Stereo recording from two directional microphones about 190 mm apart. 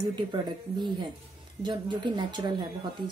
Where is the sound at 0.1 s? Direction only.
25° right (ahead or behind).